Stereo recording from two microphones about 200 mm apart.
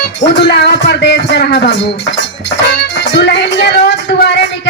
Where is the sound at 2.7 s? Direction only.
60° left (ahead or behind).